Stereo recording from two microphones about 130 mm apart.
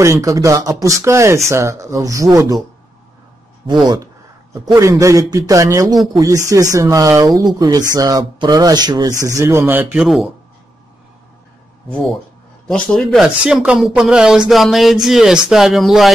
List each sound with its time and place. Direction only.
0.0 s speech: 25° right (ahead or behind)
4.7 s speech: 25° right (ahead or behind)
7.2 s speech: centre (ahead or behind)
7.5 s speech: 30° right (ahead or behind); by 9.9 s 15° right (ahead or behind)
9.9 s speech: centre (ahead or behind)
11.9 s speech: centre (ahead or behind)